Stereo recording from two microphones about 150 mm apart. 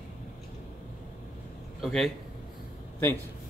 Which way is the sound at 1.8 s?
Centre (ahead or behind).